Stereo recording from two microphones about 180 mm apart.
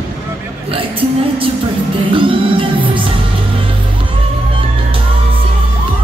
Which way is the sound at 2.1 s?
30° right (ahead or behind).